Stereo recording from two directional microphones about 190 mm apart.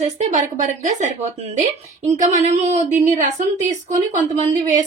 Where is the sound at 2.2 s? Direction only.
40° right (ahead or behind).